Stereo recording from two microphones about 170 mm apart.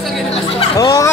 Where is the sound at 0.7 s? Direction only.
20° left (ahead or behind).